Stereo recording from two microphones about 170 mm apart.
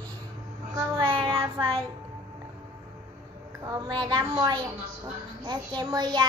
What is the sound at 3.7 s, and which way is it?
A child's voice, 20° right (ahead or behind).